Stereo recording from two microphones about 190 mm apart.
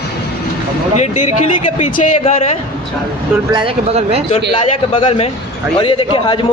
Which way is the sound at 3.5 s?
30° right (ahead or behind).